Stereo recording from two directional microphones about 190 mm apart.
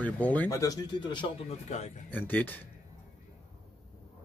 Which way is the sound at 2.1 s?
10° left (ahead or behind).